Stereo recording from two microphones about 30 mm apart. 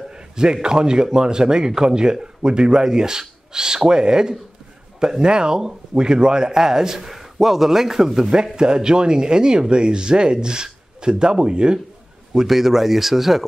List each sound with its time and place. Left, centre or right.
0.1 s speech: right; by 8.3 s centre
8.5 s speech: right
12.4 s speech: centre